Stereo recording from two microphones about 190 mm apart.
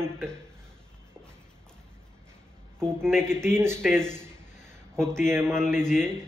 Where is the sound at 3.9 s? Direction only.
5° left (ahead or behind).